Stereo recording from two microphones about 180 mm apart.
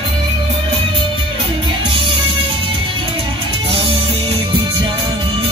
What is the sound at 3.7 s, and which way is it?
Music, 30° right (ahead or behind).